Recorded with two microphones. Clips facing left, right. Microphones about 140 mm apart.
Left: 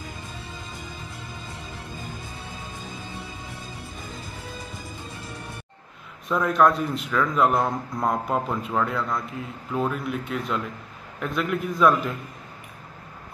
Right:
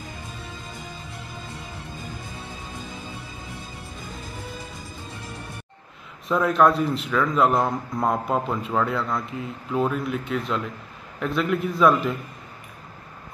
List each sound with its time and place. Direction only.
6.2 s a man's voice: centre (ahead or behind)